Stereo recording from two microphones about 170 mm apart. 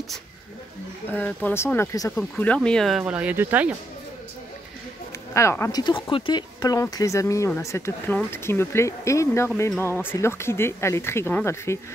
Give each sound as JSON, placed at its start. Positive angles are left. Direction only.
{"t": 1.0, "sound": "speech", "side_deg": 10}
{"t": 5.3, "sound": "speech", "side_deg": 15}